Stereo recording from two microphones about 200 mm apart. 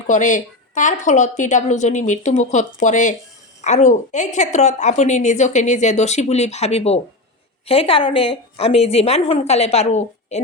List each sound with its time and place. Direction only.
0.1 s a woman's voice: 40° left (ahead or behind)